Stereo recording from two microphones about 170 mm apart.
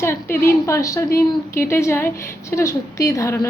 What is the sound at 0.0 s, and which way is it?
A woman's voice, 15° left (ahead or behind).